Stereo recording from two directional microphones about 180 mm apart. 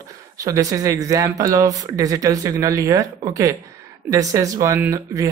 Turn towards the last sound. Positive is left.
turn(degrees=-15)  # may be behind; listen again after turning